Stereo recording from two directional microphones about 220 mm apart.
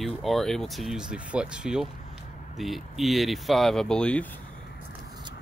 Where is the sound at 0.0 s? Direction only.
Centre (ahead or behind).